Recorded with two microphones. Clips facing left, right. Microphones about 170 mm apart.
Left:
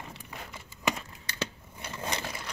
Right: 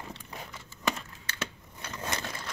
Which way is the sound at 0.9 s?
15° left (ahead or behind).